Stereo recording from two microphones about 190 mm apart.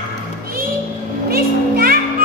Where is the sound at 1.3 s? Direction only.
50° right (ahead or behind).